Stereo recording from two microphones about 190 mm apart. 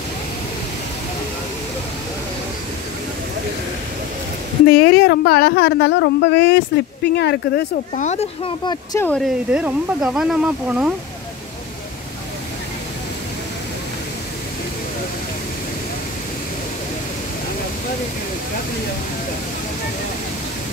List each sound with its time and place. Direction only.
4.6 s speech: 60° left (ahead or behind)
7.9 s speech: 40° left (ahead or behind)
9.0 s speech: 5° left (ahead or behind)
9.5 s speech: 5° right (ahead or behind)